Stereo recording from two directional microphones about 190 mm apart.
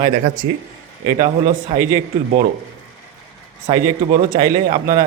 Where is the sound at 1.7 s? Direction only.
30° right (ahead or behind).